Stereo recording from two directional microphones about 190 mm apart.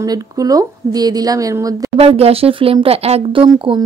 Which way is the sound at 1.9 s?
30° right (ahead or behind).